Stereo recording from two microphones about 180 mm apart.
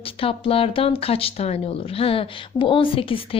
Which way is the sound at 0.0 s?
30° left (ahead or behind).